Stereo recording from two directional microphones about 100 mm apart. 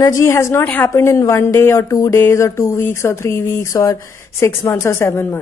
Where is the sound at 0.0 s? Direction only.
30° left (ahead or behind).